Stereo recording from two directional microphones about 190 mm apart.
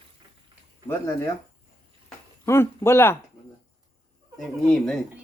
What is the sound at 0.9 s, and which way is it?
Speech, 15° left (ahead or behind).